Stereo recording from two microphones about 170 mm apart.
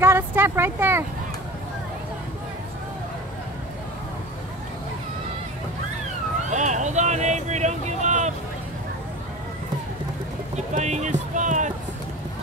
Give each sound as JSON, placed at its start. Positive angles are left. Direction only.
{"t": 0.0, "sound": "speech", "side_deg": -15}
{"t": 6.5, "sound": "vehicle", "side_deg": -45}
{"t": 10.5, "sound": "a sound", "side_deg": -45}